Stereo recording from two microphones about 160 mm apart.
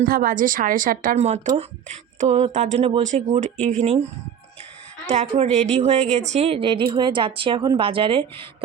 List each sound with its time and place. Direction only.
0.1 s speech: 60° right (ahead or behind); by 4.0 s 40° right (ahead or behind)
5.0 s a woman's voice: 45° right (ahead or behind)